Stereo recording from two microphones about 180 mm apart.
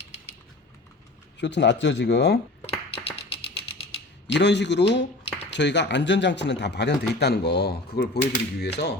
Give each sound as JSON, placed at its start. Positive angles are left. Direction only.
{"t": 1.4, "sound": "speech", "side_deg": 75}
{"t": 2.6, "sound": "a sound", "side_deg": 30}
{"t": 4.3, "sound": "speech", "side_deg": 75}